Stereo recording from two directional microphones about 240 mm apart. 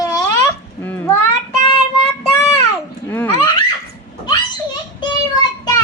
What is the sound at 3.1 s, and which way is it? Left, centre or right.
Speech, centre.